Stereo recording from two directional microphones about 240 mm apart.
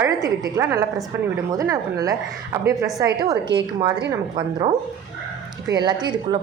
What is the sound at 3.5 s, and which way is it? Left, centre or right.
Speech, right.